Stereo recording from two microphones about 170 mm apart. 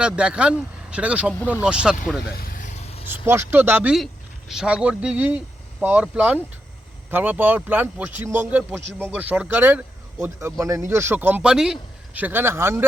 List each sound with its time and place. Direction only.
0.0 s speech: 5° right (ahead or behind)
2.3 s vehicle: 60° left (ahead or behind); by 3.0 s 40° left (ahead or behind)
3.1 s speech: 10° right (ahead or behind)